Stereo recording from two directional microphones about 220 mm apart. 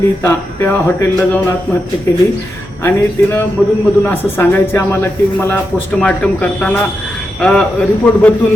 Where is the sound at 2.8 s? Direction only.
10° left (ahead or behind).